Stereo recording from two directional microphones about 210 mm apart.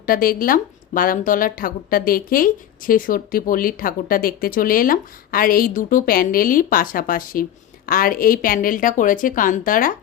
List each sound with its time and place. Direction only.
0.0 s a woman's voice: 45° left (ahead or behind)